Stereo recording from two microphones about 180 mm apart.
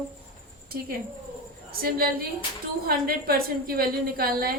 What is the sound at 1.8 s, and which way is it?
A woman's voice, 55° right (ahead or behind).